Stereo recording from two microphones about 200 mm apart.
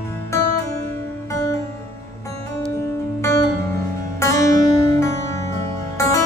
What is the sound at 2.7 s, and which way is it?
Music, 15° left (ahead or behind).